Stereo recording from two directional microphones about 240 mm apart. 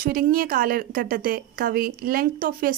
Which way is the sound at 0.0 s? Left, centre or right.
Right.